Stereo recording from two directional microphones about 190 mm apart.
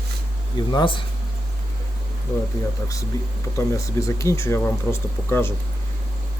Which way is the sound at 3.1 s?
20° left (ahead or behind).